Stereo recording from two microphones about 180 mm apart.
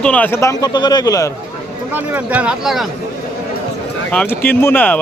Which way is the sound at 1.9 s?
10° right (ahead or behind).